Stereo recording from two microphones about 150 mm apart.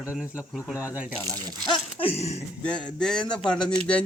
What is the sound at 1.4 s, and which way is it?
Speech, 30° right (ahead or behind).